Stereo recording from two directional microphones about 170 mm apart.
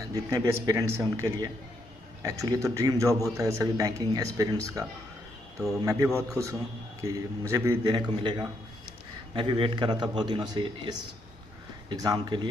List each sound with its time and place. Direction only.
0.0 s a man's voice: 20° right (ahead or behind)